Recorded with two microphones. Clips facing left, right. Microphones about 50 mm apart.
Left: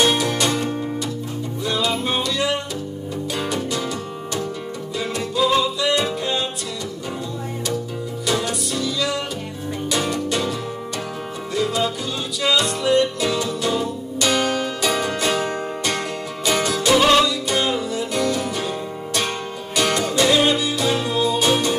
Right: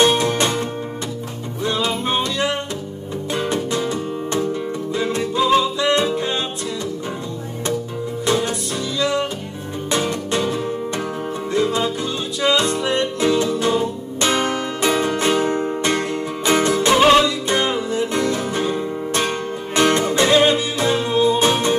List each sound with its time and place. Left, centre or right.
0.0 s music: right
4.9 s music: right
9.8 s music: right
11.5 s music: right